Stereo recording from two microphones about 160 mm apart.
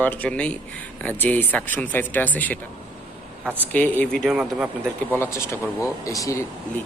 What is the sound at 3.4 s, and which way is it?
Speech, 10° right (ahead or behind).